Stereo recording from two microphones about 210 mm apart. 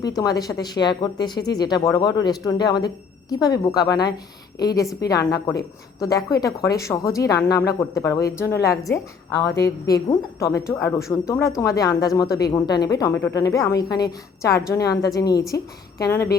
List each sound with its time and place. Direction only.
0.2 s speech: 15° left (ahead or behind)